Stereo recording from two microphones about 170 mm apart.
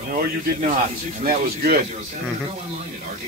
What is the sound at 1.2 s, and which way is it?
Speech, 60° right (ahead or behind).